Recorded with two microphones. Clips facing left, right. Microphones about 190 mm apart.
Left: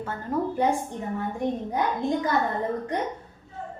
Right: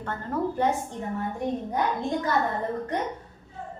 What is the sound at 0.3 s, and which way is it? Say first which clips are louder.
Speech: left 1 dB; 10° left (ahead or behind).